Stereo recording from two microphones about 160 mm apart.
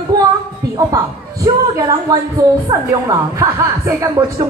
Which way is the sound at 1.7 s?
20° right (ahead or behind).